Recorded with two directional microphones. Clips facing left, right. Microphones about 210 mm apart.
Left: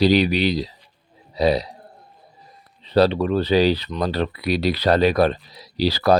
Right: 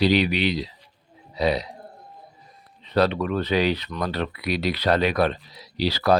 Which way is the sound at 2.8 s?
30° left (ahead or behind).